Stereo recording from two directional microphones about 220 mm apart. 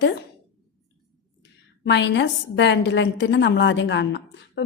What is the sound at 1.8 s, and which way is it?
A woman's voice, 55° left (ahead or behind).